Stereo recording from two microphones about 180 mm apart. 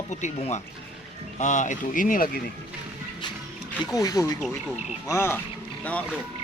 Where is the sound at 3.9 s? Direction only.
20° left (ahead or behind).